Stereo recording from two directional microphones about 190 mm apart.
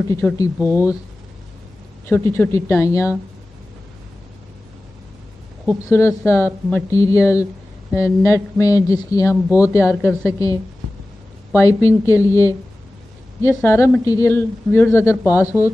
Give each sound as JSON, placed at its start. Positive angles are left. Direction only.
{"t": 0.1, "sound": "speech", "side_deg": 15}
{"t": 2.0, "sound": "speech", "side_deg": 10}
{"t": 5.7, "sound": "speech", "side_deg": 15}